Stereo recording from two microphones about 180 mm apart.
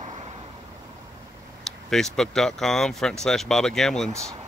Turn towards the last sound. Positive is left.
turn(degrees=-15)  # may be behind; listen again after turning